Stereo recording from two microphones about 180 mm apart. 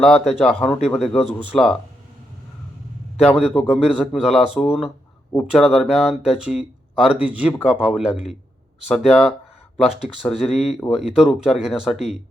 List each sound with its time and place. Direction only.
0.3 s speech: centre (ahead or behind)
3.3 s speech: 5° right (ahead or behind)